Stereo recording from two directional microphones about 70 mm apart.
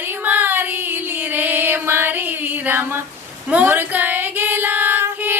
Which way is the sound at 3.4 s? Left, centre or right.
Centre.